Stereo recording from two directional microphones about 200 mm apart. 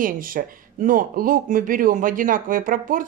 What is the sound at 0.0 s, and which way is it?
Speech, 45° right (ahead or behind).